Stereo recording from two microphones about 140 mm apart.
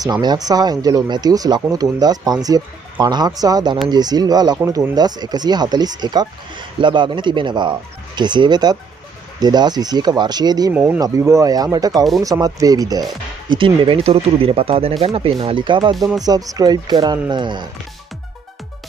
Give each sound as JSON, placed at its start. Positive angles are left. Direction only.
{"t": 0.0, "sound": "speech", "side_deg": -30}
{"t": 10.7, "sound": "speech", "side_deg": -10}
{"t": 11.0, "sound": "speech", "side_deg": -25}